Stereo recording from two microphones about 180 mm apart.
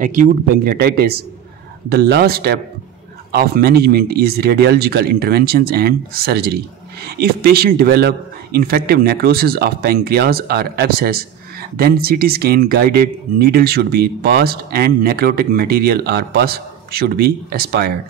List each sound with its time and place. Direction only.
0.0 s speech: 45° right (ahead or behind); by 17.9 s 65° right (ahead or behind)